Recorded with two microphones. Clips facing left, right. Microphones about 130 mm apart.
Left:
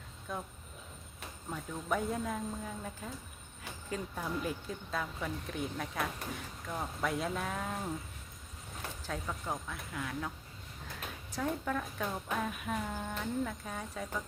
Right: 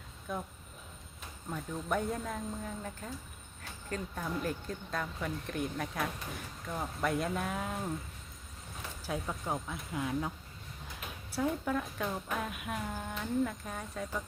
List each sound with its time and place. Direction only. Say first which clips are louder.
0.3 s speech: right 2 dB; centre (ahead or behind)
1.5 s speech: right 1 dB; centre (ahead or behind)
9.0 s speech: right 3 dB; 10° right (ahead or behind)
11.3 s speech: right 2 dB; 5° right (ahead or behind)